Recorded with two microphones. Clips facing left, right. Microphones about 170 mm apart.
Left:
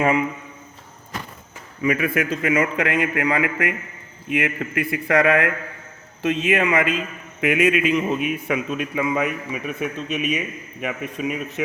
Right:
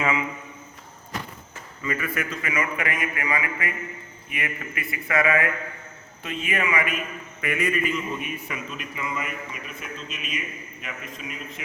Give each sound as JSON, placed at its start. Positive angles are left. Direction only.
{"t": 0.0, "sound": "speech", "side_deg": 50}
{"t": 1.8, "sound": "a man's voice", "side_deg": 75}
{"t": 6.2, "sound": "a man's voice", "side_deg": 75}
{"t": 7.4, "sound": "a man's voice", "side_deg": 90}
{"t": 10.2, "sound": "speech", "side_deg": 65}